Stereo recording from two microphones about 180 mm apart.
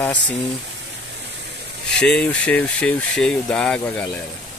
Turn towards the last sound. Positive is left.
turn(degrees=5)  # may be behind; listen again after turning